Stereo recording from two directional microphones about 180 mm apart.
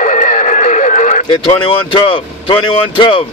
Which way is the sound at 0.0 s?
45° left (ahead or behind).